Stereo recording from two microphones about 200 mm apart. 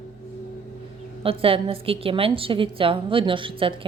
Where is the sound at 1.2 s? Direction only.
25° right (ahead or behind).